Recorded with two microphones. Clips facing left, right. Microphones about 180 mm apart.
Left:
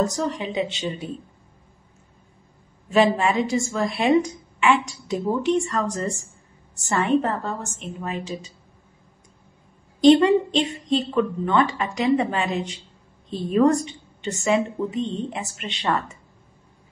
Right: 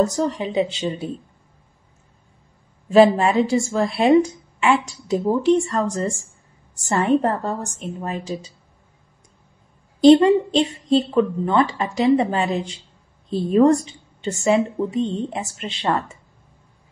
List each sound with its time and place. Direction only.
0.4 s a woman's voice: 35° right (ahead or behind)
2.9 s a woman's voice: 30° right (ahead or behind)
9.9 s a woman's voice: 35° right (ahead or behind)